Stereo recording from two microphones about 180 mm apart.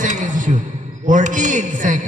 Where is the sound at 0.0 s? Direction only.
45° right (ahead or behind).